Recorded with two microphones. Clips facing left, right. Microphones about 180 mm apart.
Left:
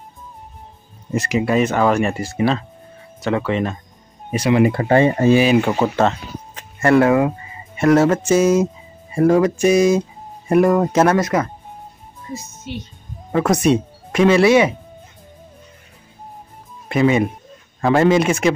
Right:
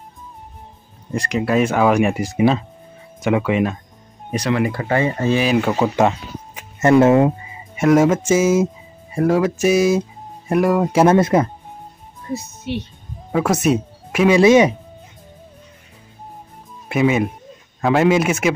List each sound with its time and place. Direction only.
1.1 s speech: 5° left (ahead or behind)
4.3 s speech: 5° left (ahead or behind)
4.6 s speech: 20° left (ahead or behind)
5.4 s speech: 5° left (ahead or behind)
5.9 s speech: 15° right (ahead or behind)
7.5 s speech: 10° right (ahead or behind)
11.1 s speech: 25° right (ahead or behind)
12.4 s speech: 65° right (ahead or behind)
13.3 s speech: 5° right (ahead or behind)
16.9 s speech: 5° right (ahead or behind)